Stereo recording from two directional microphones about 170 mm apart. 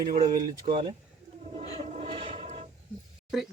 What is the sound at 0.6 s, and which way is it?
Speech, 35° right (ahead or behind).